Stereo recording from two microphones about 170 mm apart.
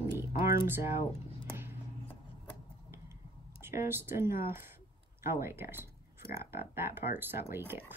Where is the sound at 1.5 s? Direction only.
15° right (ahead or behind).